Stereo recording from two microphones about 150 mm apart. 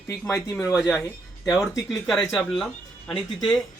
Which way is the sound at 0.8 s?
5° right (ahead or behind).